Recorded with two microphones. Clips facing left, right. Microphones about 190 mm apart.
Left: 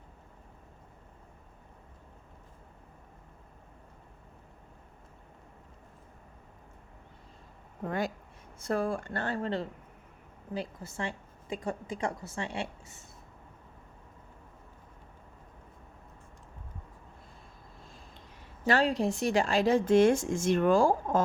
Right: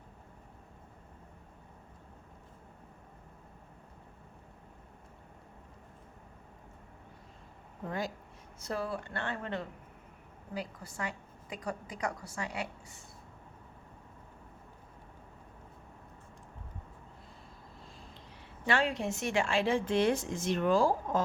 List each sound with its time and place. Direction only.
7.9 s a woman's voice: 60° left (ahead or behind); by 13.1 s 25° left (ahead or behind)
18.6 s a woman's voice: 40° left (ahead or behind)